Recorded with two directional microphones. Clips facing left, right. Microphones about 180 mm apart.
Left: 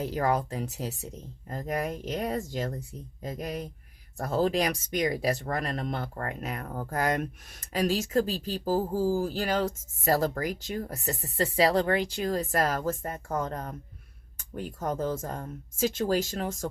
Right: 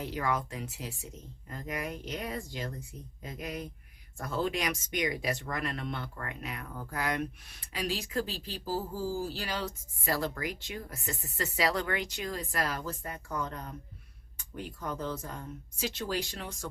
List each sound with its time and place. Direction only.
0.0 s speech: 40° left (ahead or behind)